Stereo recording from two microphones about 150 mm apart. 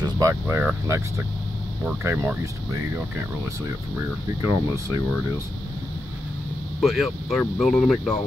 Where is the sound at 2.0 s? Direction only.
15° right (ahead or behind).